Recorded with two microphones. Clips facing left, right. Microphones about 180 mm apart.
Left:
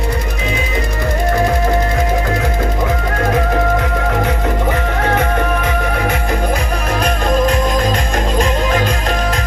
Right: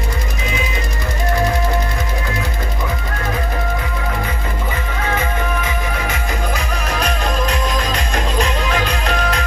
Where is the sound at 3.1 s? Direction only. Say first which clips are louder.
Left 9 dB; 60° left (ahead or behind).